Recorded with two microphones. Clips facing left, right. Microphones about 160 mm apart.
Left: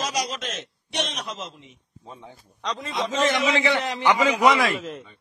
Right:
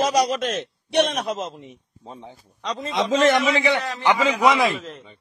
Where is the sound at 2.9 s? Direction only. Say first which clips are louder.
Right 6 dB; 90° right.